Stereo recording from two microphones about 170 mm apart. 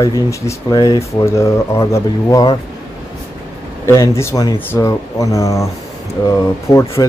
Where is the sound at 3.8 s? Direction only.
15° left (ahead or behind).